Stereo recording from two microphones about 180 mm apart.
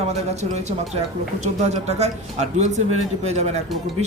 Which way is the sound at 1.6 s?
35° right (ahead or behind).